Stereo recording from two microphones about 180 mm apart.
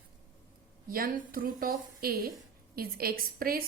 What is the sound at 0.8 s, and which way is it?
A woman's voice, 55° right (ahead or behind).